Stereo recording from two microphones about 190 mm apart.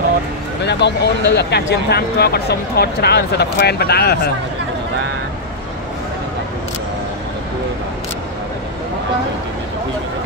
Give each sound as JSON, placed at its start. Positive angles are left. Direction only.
{"t": 0.7, "sound": "speech", "side_deg": 65}